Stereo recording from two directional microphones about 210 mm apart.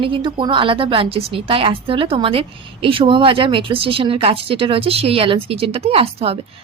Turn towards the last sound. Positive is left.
turn(degrees=-30)  # may be behind; listen again after turning